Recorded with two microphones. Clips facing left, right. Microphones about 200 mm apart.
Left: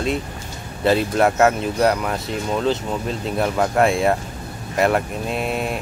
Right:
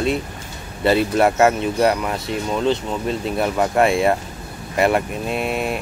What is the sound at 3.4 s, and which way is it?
Speech, 5° right (ahead or behind).